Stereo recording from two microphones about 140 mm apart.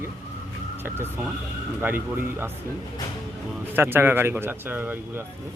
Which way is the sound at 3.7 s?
15° right (ahead or behind).